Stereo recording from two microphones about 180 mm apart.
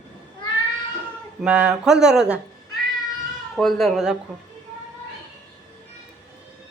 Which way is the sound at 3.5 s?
Centre (ahead or behind).